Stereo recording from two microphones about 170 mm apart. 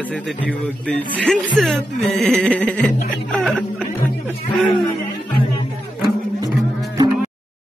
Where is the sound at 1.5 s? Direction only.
Centre (ahead or behind).